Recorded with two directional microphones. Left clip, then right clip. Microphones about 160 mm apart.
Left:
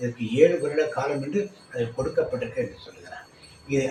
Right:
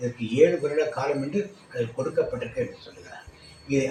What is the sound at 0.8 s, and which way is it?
A man's voice, centre (ahead or behind).